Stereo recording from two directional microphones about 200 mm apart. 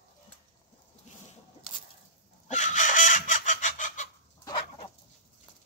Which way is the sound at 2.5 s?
40° left (ahead or behind).